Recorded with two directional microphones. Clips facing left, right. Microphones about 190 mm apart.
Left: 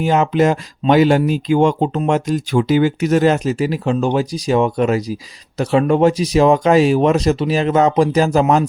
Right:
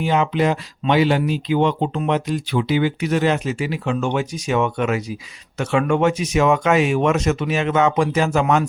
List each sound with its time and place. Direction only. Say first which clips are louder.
0.0 s speech: left 4 dB; 45° left (ahead or behind)